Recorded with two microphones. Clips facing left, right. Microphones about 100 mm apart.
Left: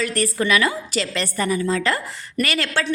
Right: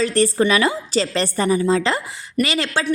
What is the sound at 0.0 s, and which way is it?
A woman's voice, 30° right (ahead or behind).